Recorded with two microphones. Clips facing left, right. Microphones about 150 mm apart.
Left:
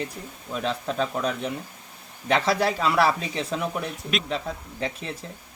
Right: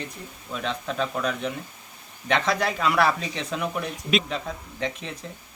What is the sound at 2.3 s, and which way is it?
Speech, 5° left (ahead or behind).